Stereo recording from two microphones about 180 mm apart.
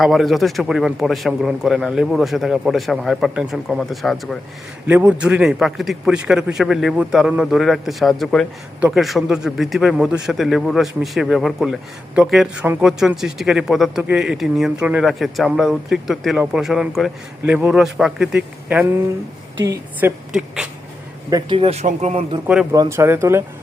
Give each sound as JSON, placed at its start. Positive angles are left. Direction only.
{"t": 0.0, "sound": "a man's voice", "side_deg": 0}
{"t": 21.2, "sound": "speech", "side_deg": -25}
{"t": 22.7, "sound": "speech", "side_deg": -15}